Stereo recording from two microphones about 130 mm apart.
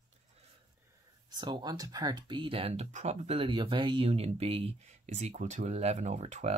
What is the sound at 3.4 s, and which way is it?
Speech, 40° right (ahead or behind).